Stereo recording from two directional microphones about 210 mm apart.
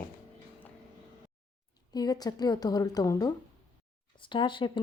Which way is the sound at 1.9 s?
20° left (ahead or behind).